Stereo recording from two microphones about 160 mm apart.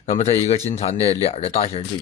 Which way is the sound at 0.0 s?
45° left (ahead or behind).